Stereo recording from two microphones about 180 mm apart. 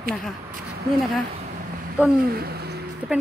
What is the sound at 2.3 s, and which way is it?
Speech, 60° right (ahead or behind).